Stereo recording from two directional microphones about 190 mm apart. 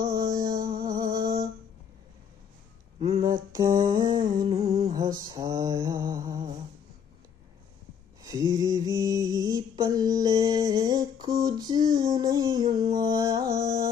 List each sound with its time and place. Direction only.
0.0 s music: 20° right (ahead or behind)
0.6 s music: 50° right (ahead or behind)
0.9 s music: 20° right (ahead or behind)
3.0 s a sound: 15° right (ahead or behind)
8.2 s mantra: 20° right (ahead or behind)